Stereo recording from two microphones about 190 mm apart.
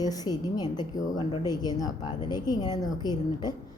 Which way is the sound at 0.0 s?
20° left (ahead or behind).